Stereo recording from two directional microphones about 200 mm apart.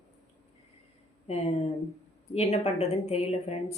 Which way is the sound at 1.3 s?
30° left (ahead or behind).